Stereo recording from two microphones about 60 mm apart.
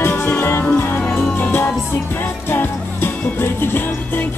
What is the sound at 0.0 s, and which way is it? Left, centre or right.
Music, left.